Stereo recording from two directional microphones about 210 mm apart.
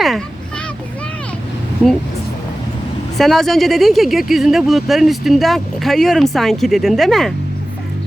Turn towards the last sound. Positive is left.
turn(degrees=0)  # may be behind; listen again after turning